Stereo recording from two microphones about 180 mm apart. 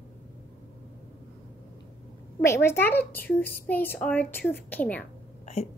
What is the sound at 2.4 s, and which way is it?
A woman's voice, 15° left (ahead or behind).